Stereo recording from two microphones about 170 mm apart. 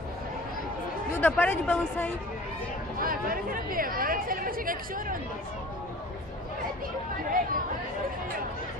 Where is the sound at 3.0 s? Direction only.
55° right (ahead or behind).